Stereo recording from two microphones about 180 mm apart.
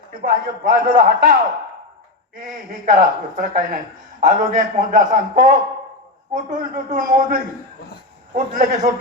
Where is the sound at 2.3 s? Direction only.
50° right (ahead or behind).